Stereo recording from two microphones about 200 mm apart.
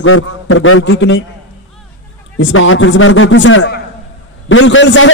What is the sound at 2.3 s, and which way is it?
A man's voice, 80° left.